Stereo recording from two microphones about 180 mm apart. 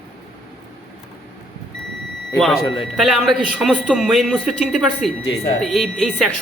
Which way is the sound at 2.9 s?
Centre (ahead or behind).